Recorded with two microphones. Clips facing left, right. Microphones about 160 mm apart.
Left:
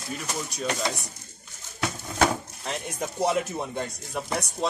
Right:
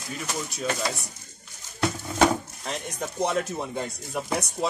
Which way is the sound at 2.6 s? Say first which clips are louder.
Left 1 dB; 5° left (ahead or behind).